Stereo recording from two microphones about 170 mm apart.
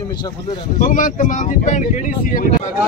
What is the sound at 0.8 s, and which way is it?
Speech, 50° left (ahead or behind).